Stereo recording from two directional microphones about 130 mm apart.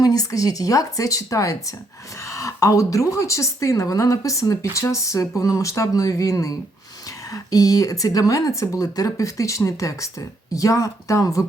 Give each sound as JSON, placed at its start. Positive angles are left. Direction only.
{"t": 0.0, "sound": "speech", "side_deg": 30}